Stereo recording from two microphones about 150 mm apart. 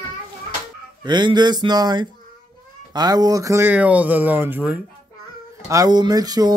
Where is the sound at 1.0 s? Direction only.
30° right (ahead or behind); by 4.7 s 10° right (ahead or behind).